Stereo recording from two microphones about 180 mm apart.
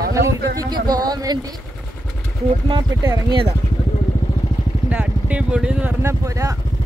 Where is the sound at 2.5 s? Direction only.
25° right (ahead or behind).